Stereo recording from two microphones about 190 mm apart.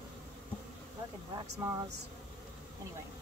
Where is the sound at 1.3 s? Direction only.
15° right (ahead or behind).